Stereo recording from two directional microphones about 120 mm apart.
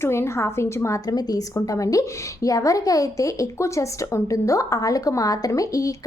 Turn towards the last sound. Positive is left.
turn(degrees=25)  # may be behind; listen again after turning